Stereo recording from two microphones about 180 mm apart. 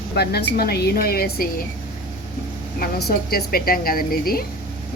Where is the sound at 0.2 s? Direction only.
65° left (ahead or behind).